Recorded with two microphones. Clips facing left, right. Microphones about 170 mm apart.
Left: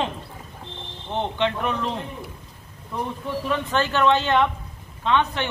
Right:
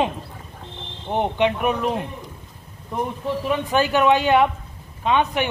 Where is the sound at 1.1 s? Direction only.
15° right (ahead or behind).